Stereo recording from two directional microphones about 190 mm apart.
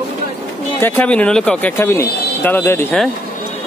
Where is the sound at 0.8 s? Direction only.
10° left (ahead or behind).